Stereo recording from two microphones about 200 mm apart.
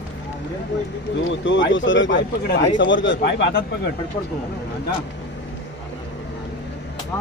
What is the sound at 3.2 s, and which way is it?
Speech, 50° left (ahead or behind).